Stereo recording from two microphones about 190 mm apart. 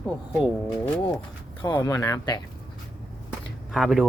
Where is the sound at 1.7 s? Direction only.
15° left (ahead or behind).